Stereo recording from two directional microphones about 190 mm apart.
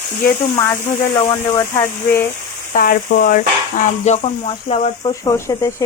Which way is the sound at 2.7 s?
50° left (ahead or behind).